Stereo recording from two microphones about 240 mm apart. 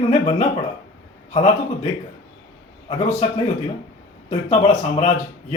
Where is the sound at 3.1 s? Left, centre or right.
Left.